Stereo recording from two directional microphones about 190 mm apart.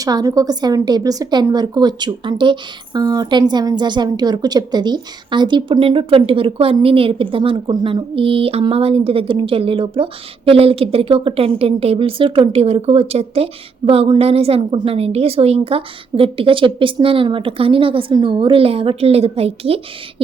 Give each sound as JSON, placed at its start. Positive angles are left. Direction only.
{"t": 0.0, "sound": "a woman's voice", "side_deg": -20}